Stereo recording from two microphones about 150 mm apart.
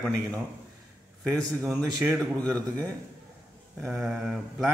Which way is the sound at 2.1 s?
5° left (ahead or behind).